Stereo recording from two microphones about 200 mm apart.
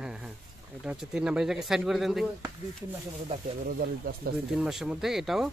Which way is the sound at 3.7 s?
50° right (ahead or behind).